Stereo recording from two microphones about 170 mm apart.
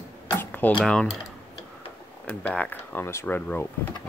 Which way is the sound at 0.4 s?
10° left (ahead or behind).